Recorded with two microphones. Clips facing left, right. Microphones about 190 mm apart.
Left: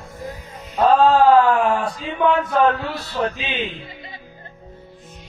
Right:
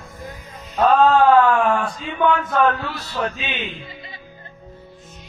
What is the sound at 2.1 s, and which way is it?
Speech, 30° left (ahead or behind).